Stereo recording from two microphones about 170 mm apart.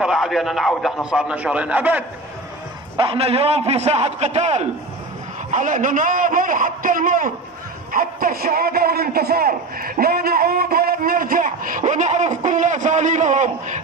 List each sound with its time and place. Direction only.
0.0 s a man's voice: centre (ahead or behind)
3.0 s a man's voice: 35° right (ahead or behind)